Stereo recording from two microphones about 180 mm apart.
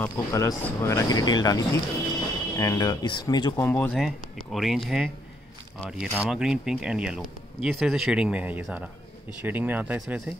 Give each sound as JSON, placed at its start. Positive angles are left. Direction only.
{"t": 0.0, "sound": "speech", "side_deg": 15}
{"t": 3.6, "sound": "speech", "side_deg": 5}